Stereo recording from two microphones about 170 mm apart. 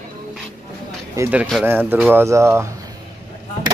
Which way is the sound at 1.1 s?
10° right (ahead or behind).